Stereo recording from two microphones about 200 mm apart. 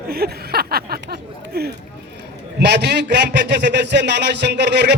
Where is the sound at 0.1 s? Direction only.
50° right (ahead or behind).